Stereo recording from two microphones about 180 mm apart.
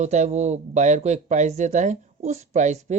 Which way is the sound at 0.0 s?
40° right (ahead or behind).